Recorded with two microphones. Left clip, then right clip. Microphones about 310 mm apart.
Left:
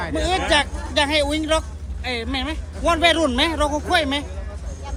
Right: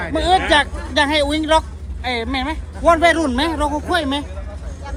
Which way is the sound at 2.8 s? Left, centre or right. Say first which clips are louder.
Right 4 dB; centre.